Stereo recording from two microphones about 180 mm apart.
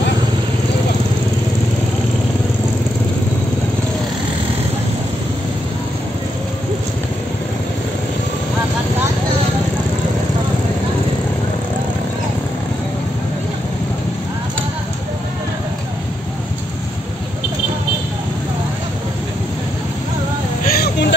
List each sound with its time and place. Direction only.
20.7 s vehicle: 60° left (ahead or behind)